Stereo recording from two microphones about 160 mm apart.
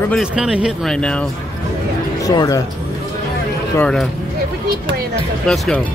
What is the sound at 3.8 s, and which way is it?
Speech, 5° left (ahead or behind).